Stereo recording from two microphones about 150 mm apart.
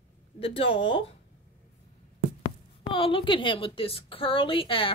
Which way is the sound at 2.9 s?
35° left (ahead or behind).